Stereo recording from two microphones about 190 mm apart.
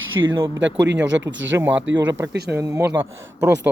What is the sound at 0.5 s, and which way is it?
Speech, 70° right (ahead or behind).